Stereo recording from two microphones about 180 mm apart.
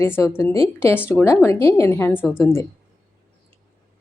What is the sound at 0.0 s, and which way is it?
Speech, 15° left (ahead or behind).